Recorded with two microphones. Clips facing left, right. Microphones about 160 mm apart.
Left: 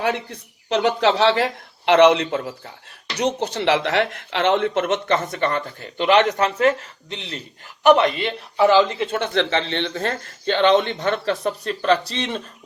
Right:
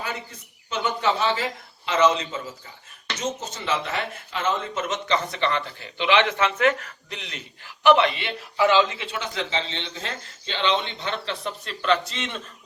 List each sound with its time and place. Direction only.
0.0 s speech: 70° left (ahead or behind); by 6.5 s 40° left (ahead or behind)
6.6 s speech: 30° left (ahead or behind)
7.9 s a man's voice: 45° left (ahead or behind)